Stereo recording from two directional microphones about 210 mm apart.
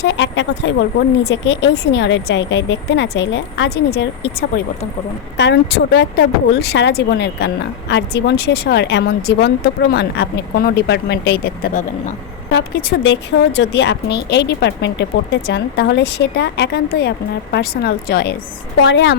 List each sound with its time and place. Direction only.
0.0 s a woman's voice: 55° left (ahead or behind); by 12.1 s 35° left (ahead or behind)
12.5 s a woman's voice: 55° left (ahead or behind)